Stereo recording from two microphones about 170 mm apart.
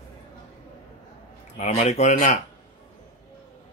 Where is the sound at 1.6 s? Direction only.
45° left (ahead or behind).